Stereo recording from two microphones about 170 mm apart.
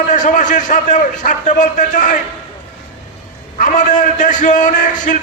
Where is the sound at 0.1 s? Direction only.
50° left (ahead or behind).